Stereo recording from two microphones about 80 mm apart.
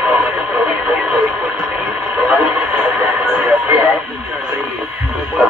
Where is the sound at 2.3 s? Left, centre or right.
Centre.